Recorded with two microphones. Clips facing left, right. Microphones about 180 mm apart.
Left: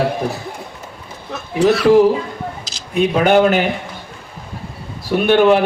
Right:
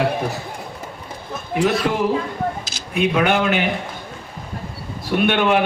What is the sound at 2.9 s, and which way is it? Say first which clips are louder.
Speech: left 5 dB; 35° left (ahead or behind).